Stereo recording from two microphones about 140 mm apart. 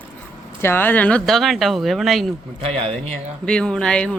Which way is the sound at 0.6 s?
15° left (ahead or behind).